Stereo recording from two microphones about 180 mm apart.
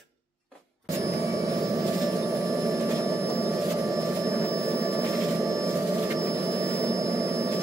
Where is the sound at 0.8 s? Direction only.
15° right (ahead or behind).